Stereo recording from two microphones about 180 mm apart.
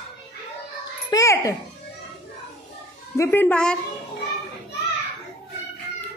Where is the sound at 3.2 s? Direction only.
10° left (ahead or behind).